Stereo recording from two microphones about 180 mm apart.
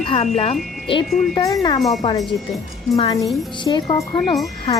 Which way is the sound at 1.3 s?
20° left (ahead or behind).